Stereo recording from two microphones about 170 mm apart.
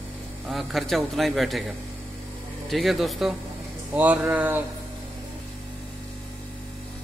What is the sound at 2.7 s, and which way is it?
A man's voice, centre (ahead or behind).